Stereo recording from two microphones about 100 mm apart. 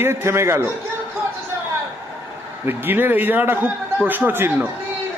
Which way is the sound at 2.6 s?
20° right (ahead or behind).